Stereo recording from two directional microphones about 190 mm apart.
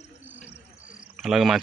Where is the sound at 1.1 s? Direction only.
Centre (ahead or behind).